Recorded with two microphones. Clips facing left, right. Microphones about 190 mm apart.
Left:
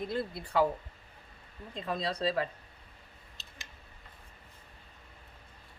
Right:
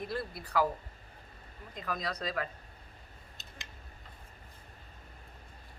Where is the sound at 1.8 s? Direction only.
25° left (ahead or behind).